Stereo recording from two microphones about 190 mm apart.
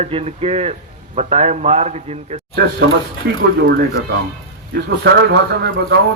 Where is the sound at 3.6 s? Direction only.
60° right (ahead or behind).